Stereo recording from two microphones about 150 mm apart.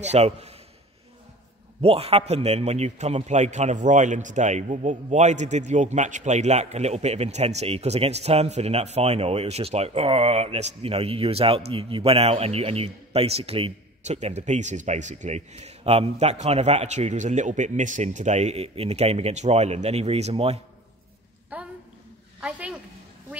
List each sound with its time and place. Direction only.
0.0 s a man's voice: 45° right (ahead or behind)
1.8 s a man's voice: 40° right (ahead or behind)
21.5 s a sound: 10° right (ahead or behind)
22.4 s a woman's voice: 10° right (ahead or behind)